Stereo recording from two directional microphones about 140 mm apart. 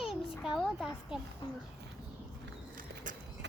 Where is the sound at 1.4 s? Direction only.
30° left (ahead or behind).